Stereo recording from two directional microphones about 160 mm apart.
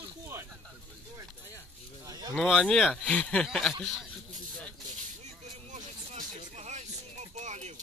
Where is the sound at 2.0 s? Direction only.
20° right (ahead or behind).